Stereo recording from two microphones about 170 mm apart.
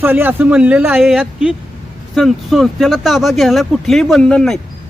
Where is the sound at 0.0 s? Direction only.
10° right (ahead or behind).